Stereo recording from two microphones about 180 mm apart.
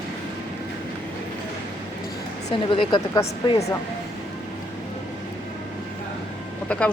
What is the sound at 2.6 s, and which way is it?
Speech, 30° left (ahead or behind).